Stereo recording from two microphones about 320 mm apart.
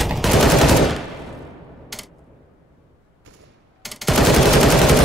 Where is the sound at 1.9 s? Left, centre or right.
Centre.